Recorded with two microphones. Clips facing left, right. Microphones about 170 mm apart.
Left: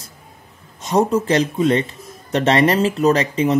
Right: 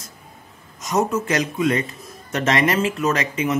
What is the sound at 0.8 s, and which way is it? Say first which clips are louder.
Speech: left 4 dB; 30° left (ahead or behind).